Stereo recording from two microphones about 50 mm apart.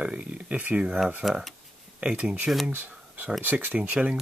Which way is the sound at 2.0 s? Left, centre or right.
Centre.